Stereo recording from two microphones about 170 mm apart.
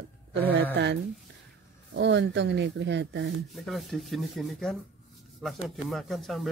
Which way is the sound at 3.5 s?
Centre (ahead or behind).